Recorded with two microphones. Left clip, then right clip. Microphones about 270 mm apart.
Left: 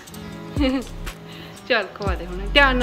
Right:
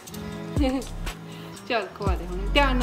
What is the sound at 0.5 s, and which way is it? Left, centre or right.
Speech, centre.